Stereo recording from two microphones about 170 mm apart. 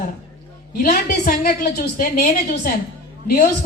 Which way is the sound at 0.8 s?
65° left (ahead or behind).